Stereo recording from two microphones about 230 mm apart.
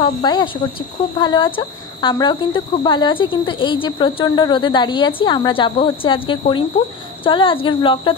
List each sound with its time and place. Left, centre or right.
0.0 s speech: centre